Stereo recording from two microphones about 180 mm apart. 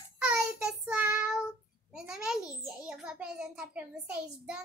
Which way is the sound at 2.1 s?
5° right (ahead or behind).